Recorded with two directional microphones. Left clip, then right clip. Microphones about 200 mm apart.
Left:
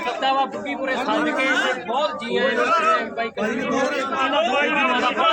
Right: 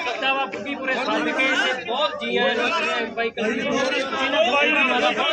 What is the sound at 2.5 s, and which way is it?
A man's voice, 60° left (ahead or behind).